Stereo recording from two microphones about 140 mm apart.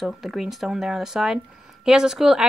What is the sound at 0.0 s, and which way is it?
Speech, centre (ahead or behind).